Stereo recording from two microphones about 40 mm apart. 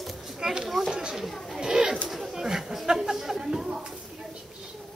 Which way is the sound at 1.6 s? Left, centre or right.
Centre.